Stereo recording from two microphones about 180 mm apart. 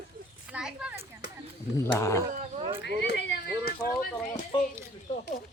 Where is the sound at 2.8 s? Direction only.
70° left (ahead or behind).